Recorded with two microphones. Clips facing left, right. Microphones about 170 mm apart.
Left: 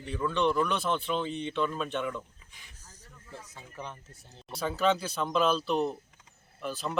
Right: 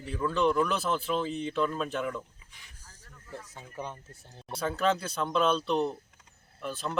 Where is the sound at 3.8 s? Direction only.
10° right (ahead or behind).